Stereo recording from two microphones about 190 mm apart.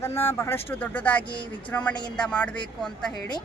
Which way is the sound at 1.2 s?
25° left (ahead or behind).